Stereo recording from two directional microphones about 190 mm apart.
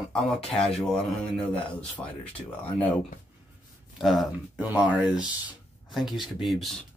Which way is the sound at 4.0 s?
Centre (ahead or behind).